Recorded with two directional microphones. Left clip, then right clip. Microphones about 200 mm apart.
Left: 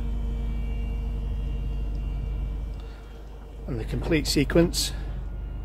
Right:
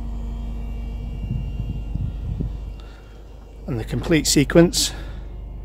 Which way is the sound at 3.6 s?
40° right (ahead or behind).